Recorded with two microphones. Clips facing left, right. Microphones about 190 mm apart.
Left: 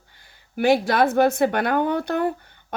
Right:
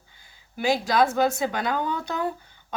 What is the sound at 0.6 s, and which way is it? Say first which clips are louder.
A woman's voice: left 4 dB; 60° left (ahead or behind).